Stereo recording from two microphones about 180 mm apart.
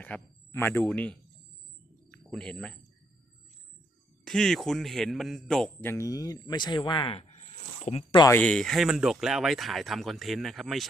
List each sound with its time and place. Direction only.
0.0 s speech: 10° left (ahead or behind)
2.3 s speech: 5° left (ahead or behind)
4.3 s speech: centre (ahead or behind); by 8.2 s 35° left (ahead or behind)
8.2 s speech: 10° left (ahead or behind)